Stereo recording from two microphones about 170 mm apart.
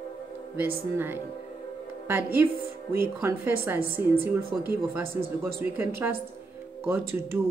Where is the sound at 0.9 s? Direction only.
10° right (ahead or behind).